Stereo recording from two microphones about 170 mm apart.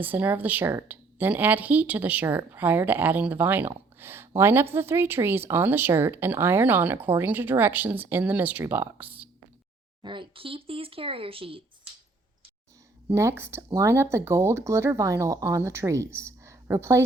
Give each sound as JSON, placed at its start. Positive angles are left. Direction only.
{"t": 0.0, "sound": "speech", "side_deg": -10}
{"t": 3.9, "sound": "a sound", "side_deg": -15}
{"t": 4.4, "sound": "speech", "side_deg": -15}
{"t": 10.0, "sound": "speech", "side_deg": -30}
{"t": 13.1, "sound": "speech", "side_deg": -15}